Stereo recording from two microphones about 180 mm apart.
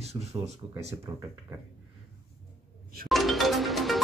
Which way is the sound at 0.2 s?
20° right (ahead or behind).